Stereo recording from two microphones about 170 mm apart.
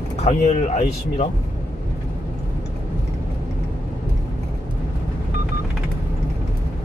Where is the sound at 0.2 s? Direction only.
45° left (ahead or behind).